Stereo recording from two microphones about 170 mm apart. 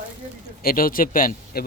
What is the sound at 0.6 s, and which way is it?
A man's voice, 60° left (ahead or behind).